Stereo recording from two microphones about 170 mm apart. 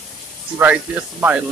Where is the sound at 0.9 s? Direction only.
10° right (ahead or behind).